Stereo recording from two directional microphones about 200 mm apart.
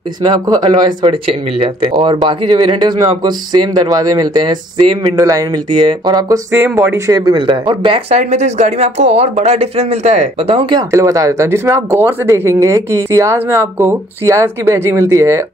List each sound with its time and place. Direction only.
0.2 s speech: 20° right (ahead or behind)